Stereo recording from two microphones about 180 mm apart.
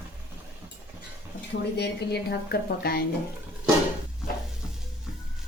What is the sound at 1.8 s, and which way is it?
Speech, 65° left (ahead or behind).